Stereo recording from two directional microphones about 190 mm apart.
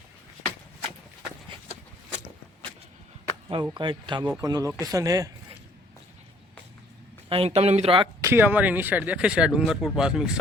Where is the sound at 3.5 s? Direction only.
25° right (ahead or behind).